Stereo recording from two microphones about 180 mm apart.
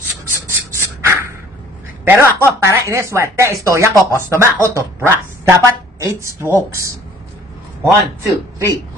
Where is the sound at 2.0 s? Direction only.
10° right (ahead or behind).